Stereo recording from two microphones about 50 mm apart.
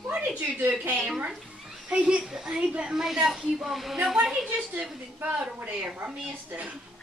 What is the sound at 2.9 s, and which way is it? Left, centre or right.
Speech, centre.